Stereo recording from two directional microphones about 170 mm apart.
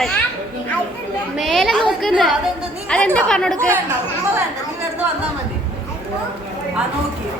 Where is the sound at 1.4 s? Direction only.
Centre (ahead or behind).